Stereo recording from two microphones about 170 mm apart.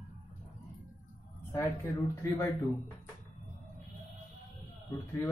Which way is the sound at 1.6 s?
15° left (ahead or behind).